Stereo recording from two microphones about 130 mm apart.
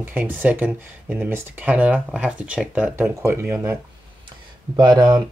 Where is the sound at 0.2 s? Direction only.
10° right (ahead or behind).